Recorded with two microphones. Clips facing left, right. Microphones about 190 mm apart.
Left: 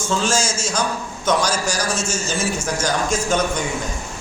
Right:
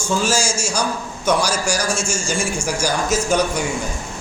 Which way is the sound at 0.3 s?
10° right (ahead or behind).